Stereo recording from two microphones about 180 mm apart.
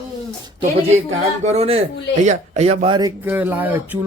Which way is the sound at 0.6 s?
35° right (ahead or behind).